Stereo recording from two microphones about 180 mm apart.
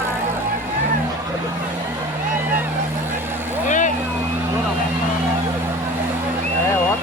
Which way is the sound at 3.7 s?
45° left (ahead or behind).